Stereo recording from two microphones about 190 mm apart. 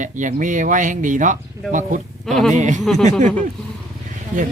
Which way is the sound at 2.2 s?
Centre (ahead or behind).